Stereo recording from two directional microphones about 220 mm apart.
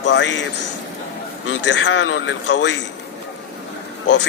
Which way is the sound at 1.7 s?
55° left (ahead or behind).